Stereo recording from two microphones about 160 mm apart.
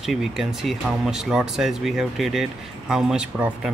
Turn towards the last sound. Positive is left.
turn(degrees=-5)  # may be behind; listen again after turning